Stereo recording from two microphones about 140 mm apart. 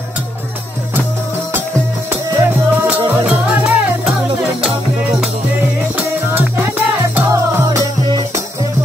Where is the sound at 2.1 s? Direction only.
15° right (ahead or behind).